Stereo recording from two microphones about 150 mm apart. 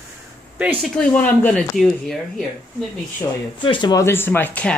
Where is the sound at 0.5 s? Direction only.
5° right (ahead or behind).